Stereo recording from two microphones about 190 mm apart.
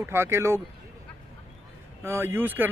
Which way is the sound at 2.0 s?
10° right (ahead or behind).